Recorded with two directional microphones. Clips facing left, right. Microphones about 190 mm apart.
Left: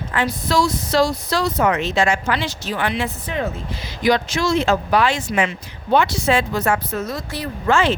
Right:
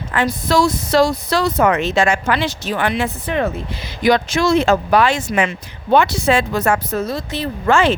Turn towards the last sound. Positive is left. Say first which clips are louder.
# right 3 dB
turn(degrees=-55)  # may be behind; listen again after turning